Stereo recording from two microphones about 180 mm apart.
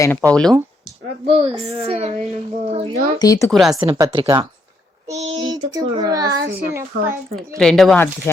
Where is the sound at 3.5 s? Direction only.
Centre (ahead or behind).